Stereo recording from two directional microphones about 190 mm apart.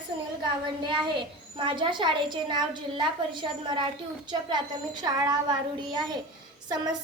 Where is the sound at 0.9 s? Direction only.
25° right (ahead or behind).